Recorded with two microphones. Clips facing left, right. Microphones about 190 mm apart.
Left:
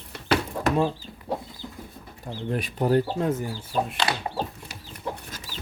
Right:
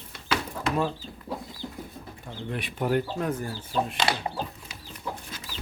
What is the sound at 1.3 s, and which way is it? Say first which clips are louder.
Chicken: left 5 dB; 65° left (ahead or behind).